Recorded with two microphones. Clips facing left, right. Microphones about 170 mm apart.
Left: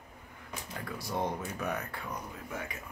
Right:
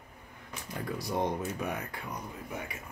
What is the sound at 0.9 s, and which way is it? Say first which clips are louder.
Speech: right 2 dB; 15° right (ahead or behind).